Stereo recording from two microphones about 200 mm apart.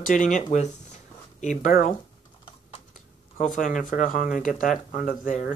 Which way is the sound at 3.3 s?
40° left (ahead or behind).